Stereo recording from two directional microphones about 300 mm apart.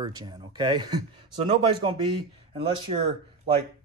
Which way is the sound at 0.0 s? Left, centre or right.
Centre.